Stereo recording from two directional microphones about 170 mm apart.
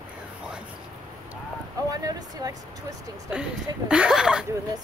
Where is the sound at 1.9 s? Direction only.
20° right (ahead or behind).